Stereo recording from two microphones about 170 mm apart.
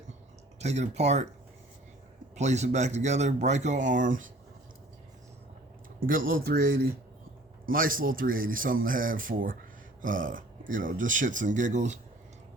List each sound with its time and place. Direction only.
0.6 s speech: 40° right (ahead or behind)
2.3 s speech: 40° right (ahead or behind)
6.0 s speech: 55° right (ahead or behind)